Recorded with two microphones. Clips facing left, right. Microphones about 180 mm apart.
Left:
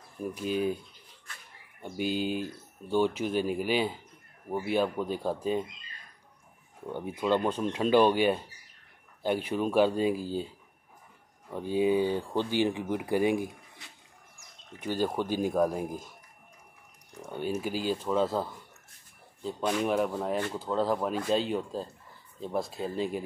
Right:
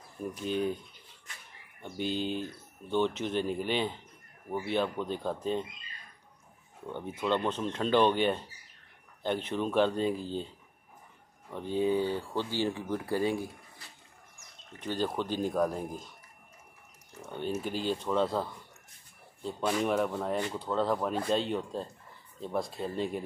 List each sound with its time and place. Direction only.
0.3 s speech: 5° left (ahead or behind)
6.9 s speech: 10° left (ahead or behind)
11.5 s speech: 10° left (ahead or behind)
14.7 s speech: 10° left (ahead or behind)
17.2 s speech: 10° left (ahead or behind)